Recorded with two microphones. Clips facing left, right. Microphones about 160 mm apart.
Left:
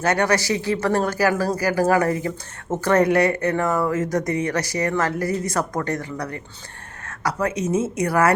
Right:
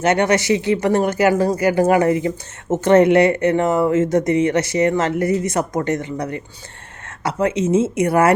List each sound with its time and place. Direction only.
0.0 s speech: 20° right (ahead or behind)